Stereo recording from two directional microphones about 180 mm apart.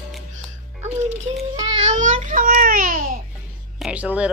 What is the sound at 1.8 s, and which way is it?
A child's voice, 40° right (ahead or behind).